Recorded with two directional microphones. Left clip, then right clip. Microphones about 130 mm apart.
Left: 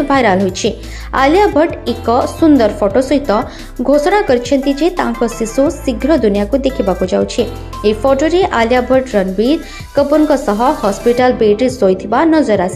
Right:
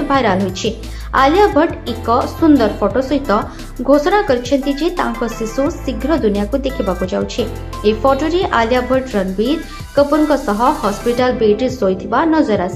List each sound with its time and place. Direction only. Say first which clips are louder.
0.1 s speech: left 3 dB; 45° left (ahead or behind)